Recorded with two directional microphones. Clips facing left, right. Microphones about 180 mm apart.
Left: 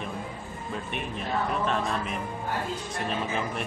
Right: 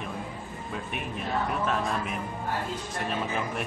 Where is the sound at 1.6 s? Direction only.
5° right (ahead or behind).